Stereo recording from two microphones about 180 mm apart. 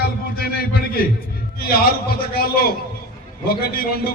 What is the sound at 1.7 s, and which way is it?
A man's voice, 55° left (ahead or behind).